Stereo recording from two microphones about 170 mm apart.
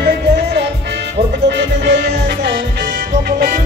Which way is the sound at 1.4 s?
90° right.